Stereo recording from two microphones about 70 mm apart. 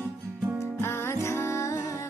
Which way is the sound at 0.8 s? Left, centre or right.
Left.